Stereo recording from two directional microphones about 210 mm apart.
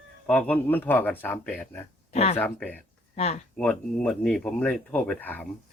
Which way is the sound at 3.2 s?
30° left (ahead or behind).